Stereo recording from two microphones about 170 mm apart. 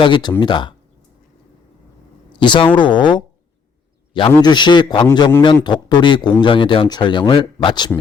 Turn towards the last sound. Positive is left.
turn(degrees=30)  # may be behind; listen again after turning